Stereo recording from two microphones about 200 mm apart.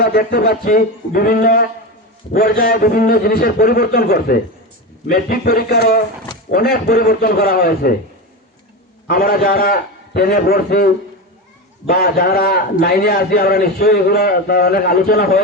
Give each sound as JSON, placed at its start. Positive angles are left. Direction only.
{"t": 0.0, "sound": "a man's voice", "side_deg": 50}
{"t": 9.0, "sound": "a man's voice", "side_deg": 50}